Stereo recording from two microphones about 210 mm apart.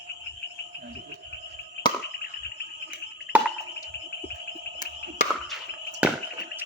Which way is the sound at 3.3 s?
5° right (ahead or behind).